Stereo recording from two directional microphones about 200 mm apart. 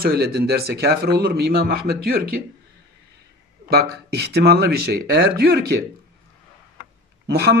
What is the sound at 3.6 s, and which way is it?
Speech, 55° right (ahead or behind).